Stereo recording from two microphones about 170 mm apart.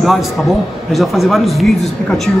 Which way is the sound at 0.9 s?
Centre (ahead or behind).